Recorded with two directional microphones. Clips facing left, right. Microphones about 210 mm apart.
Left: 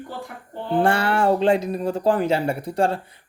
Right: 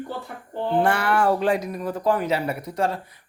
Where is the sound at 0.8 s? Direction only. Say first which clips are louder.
Left 2 dB; 30° left (ahead or behind).